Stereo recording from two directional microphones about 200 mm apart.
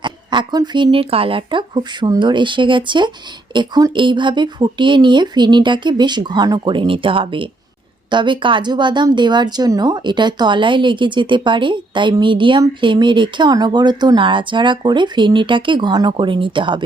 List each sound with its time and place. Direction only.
0.0 s speech: 20° right (ahead or behind)